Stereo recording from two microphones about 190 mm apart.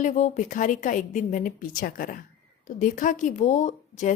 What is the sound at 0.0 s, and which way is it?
A woman's voice, 40° left (ahead or behind).